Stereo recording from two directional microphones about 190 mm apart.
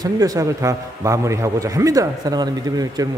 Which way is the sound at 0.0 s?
20° right (ahead or behind).